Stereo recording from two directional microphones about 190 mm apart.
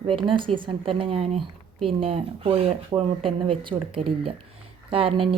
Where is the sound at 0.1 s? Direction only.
25° right (ahead or behind).